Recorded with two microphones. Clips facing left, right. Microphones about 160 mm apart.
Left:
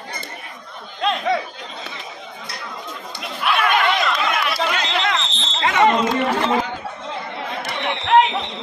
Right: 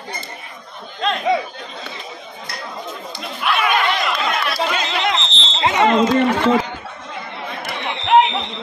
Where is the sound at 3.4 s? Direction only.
5° right (ahead or behind).